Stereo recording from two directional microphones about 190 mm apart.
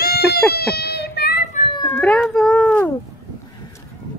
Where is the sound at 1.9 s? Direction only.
5° left (ahead or behind).